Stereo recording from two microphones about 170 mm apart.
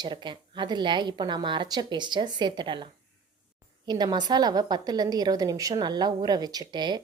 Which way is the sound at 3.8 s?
25° right (ahead or behind).